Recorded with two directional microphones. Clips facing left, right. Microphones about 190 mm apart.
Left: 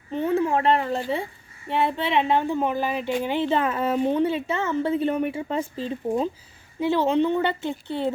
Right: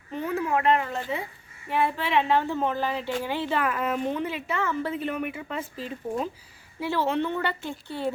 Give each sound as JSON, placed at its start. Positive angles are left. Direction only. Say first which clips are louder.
{"t": 0.1, "sound": "a woman's voice", "louder": "left 5 dB", "side_deg": 25}